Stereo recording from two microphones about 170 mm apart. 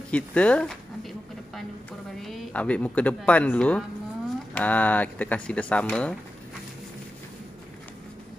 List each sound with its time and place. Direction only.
0.1 s speech: 5° left (ahead or behind)
2.2 s speech: 5° left (ahead or behind)